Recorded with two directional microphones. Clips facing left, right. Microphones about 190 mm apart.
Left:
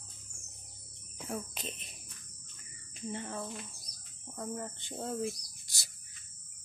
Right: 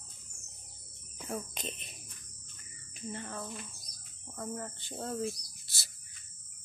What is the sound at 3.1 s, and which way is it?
Speech, 20° left (ahead or behind).